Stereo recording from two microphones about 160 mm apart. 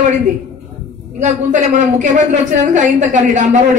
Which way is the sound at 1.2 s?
50° right (ahead or behind).